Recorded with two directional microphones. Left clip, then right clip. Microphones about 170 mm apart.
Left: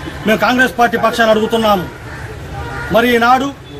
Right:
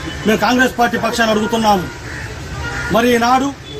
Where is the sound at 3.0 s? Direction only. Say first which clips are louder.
Left 3 dB; 10° left (ahead or behind).